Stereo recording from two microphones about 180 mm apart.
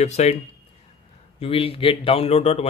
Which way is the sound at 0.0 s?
40° left (ahead or behind).